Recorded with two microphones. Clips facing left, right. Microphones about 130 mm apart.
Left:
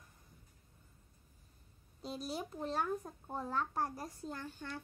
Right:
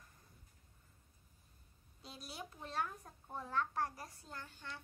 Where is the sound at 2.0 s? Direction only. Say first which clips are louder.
Left 9 dB; 40° left (ahead or behind).